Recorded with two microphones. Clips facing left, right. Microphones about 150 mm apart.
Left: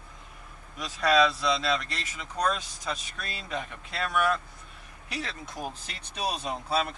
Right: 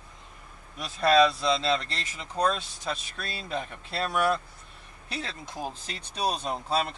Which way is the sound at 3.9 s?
30° right (ahead or behind).